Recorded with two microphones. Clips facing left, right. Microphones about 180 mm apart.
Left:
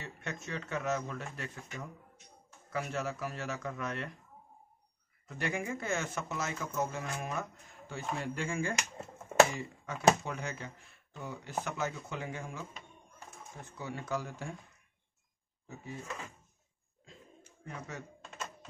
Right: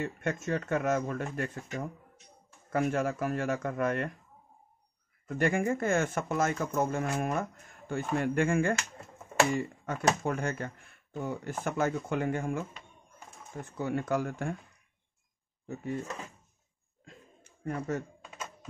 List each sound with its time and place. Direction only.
0.0 s speech: 50° right (ahead or behind)
5.2 s speech: 50° right (ahead or behind)
13.7 s speech: 55° right (ahead or behind)
17.0 s a sound: 55° right (ahead or behind)
18.2 s typing: 5° right (ahead or behind)